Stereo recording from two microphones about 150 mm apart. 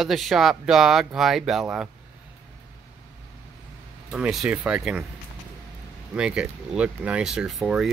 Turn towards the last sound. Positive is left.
turn(degrees=-5)  # may be behind; listen again after turning